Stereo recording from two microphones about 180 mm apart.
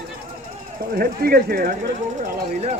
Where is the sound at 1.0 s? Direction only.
55° right (ahead or behind).